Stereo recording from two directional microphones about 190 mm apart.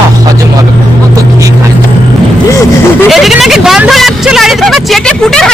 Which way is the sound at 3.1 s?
Centre (ahead or behind).